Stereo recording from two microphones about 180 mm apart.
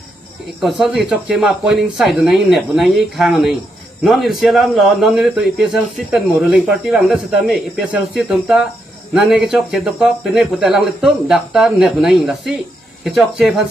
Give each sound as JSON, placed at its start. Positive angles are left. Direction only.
{"t": 0.6, "sound": "speech", "side_deg": 0}